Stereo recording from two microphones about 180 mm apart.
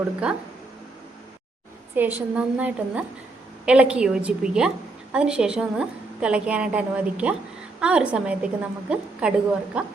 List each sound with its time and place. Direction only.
2.0 s a woman's voice: 10° right (ahead or behind)